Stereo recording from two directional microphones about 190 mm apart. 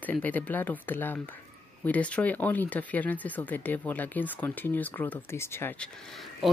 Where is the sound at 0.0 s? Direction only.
10° left (ahead or behind).